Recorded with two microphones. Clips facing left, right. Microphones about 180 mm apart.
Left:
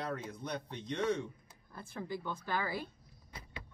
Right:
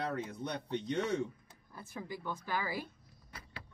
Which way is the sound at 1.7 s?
10° right (ahead or behind).